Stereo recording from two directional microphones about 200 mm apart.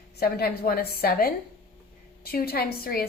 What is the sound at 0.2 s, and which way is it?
A woman's voice, 50° left (ahead or behind).